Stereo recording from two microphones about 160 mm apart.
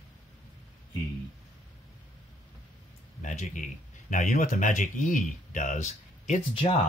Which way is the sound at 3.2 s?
50° left (ahead or behind).